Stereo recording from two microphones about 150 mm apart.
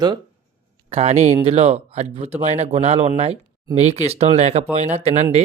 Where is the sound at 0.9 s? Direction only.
45° right (ahead or behind).